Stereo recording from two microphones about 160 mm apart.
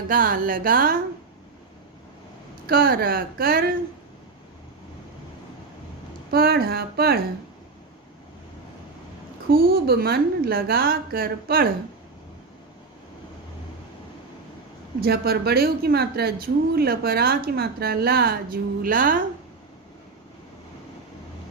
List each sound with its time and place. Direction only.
0.1 s a woman's voice: 60° right (ahead or behind)
2.6 s speech: 70° right (ahead or behind)
6.3 s speech: 70° right (ahead or behind)
9.5 s speech: 70° right (ahead or behind)
15.0 s speech: 75° right (ahead or behind); by 19.2 s 60° right (ahead or behind)